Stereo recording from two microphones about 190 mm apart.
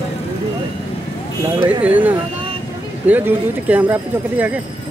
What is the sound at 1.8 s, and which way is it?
Speech, 10° right (ahead or behind).